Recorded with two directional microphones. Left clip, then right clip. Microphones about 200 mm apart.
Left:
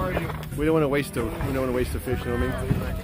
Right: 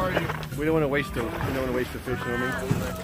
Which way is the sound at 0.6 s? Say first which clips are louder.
Left 2 dB; 40° left (ahead or behind).